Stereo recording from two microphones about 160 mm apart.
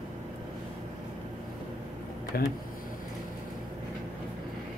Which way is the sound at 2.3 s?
75° left (ahead or behind).